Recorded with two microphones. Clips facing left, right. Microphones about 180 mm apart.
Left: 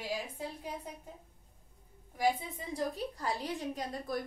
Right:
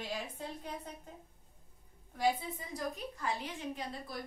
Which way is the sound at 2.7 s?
35° left (ahead or behind).